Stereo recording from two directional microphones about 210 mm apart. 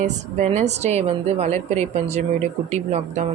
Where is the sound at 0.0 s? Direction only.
35° right (ahead or behind).